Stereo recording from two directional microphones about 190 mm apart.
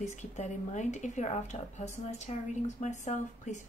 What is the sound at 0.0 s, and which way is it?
A woman's voice, 40° left (ahead or behind).